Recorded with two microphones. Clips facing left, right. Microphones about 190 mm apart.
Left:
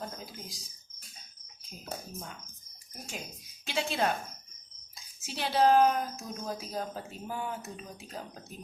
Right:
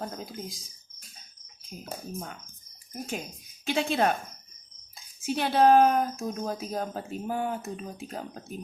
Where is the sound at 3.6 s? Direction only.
55° right (ahead or behind).